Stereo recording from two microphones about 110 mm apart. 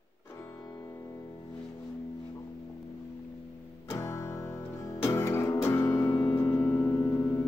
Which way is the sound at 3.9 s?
25° left (ahead or behind).